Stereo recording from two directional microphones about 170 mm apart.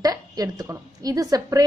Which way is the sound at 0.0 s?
20° right (ahead or behind).